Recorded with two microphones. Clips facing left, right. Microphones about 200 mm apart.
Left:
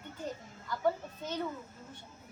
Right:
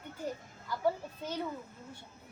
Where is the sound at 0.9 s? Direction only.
10° right (ahead or behind).